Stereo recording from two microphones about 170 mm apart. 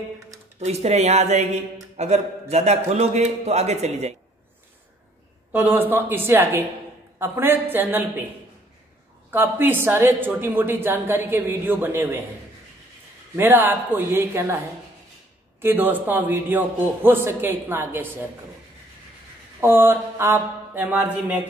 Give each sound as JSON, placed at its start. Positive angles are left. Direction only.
{"t": 0.7, "sound": "a man's voice", "side_deg": -40}
{"t": 5.5, "sound": "speech", "side_deg": -10}
{"t": 9.3, "sound": "speech", "side_deg": -10}
{"t": 13.4, "sound": "speech", "side_deg": -10}
{"t": 15.6, "sound": "speech", "side_deg": -10}
{"t": 19.6, "sound": "speech", "side_deg": -15}